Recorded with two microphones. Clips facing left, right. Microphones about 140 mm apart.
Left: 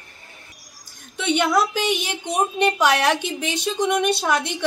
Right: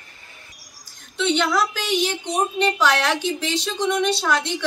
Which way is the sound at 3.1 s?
50° left (ahead or behind).